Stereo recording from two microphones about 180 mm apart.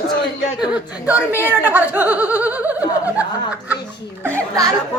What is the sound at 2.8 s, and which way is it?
Speech, 20° left (ahead or behind).